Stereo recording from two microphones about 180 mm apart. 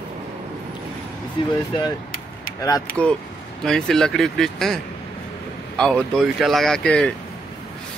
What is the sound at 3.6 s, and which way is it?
Speech, 5° left (ahead or behind).